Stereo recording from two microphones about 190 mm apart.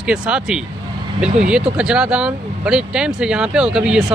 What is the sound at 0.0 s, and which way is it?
Speech, 5° right (ahead or behind).